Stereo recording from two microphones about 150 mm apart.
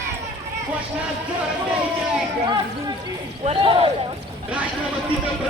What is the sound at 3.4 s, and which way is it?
Speech, 35° right (ahead or behind).